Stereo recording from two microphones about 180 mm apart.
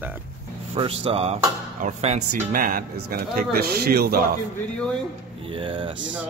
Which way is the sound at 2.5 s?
50° right (ahead or behind).